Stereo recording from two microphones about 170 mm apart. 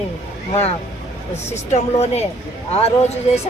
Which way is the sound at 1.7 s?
40° left (ahead or behind).